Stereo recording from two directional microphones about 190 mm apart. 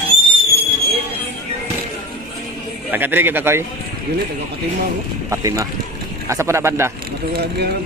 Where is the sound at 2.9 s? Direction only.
10° right (ahead or behind).